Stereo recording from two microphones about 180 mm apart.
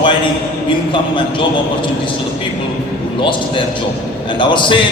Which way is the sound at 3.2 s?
25° left (ahead or behind).